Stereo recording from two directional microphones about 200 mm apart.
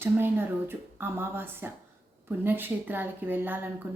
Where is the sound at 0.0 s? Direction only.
10° right (ahead or behind).